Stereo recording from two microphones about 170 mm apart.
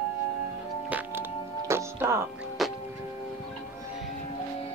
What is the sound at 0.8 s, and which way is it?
Music, 10° right (ahead or behind).